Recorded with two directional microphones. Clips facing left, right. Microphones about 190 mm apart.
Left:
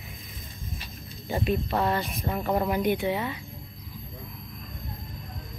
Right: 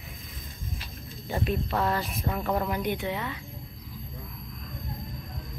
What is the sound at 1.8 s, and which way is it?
Speech, centre (ahead or behind).